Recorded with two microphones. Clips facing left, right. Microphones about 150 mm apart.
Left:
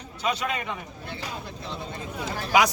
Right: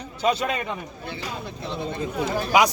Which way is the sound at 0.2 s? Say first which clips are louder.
Right 5 dB; 35° right (ahead or behind).